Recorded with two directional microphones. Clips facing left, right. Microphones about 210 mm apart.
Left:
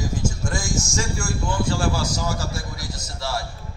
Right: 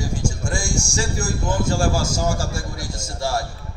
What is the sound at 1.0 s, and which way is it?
A man's voice, 40° right (ahead or behind).